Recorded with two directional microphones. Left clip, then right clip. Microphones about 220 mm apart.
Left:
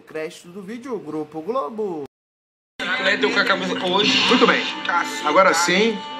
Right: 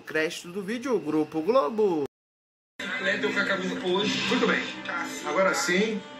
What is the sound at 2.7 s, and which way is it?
A man's voice, 50° left (ahead or behind).